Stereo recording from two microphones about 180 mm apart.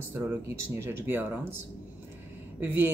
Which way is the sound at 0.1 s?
10° right (ahead or behind).